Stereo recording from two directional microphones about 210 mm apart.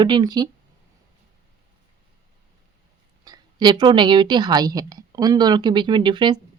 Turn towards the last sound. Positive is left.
turn(degrees=-20)  # may be behind; listen again after turning